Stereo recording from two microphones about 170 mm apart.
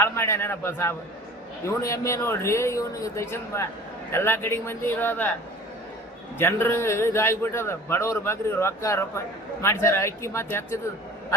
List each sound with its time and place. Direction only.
0.0 s a man's voice: 15° left (ahead or behind)
6.4 s a man's voice: 15° left (ahead or behind)